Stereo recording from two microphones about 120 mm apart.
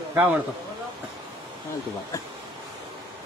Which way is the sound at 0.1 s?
15° right (ahead or behind).